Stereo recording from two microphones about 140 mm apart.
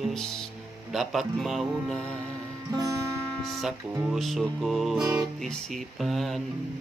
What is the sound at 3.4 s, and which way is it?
Music, centre (ahead or behind).